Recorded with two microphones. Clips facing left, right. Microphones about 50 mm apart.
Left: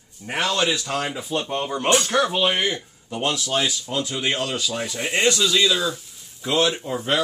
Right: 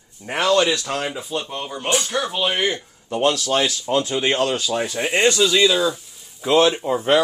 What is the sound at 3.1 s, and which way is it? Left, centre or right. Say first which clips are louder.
Speech: right 5 dB; right.